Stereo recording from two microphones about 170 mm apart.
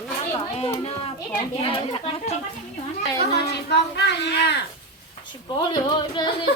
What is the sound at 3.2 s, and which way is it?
A woman's voice, 75° left (ahead or behind).